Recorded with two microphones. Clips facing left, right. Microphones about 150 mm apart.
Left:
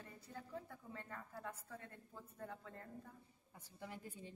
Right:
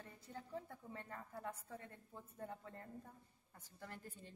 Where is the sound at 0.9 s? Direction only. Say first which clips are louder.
Right 1 dB; 20° right (ahead or behind).